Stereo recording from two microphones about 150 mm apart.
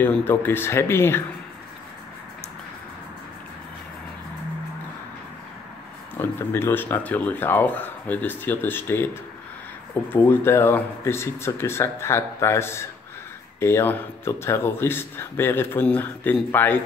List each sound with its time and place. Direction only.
0.0 s speech: 15° left (ahead or behind)
6.1 s speech: 15° left (ahead or behind)
10.1 s speech: 15° left (ahead or behind)